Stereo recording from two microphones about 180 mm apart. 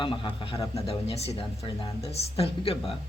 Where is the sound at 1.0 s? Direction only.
35° left (ahead or behind).